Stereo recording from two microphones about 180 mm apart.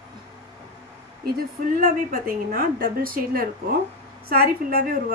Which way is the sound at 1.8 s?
50° right (ahead or behind).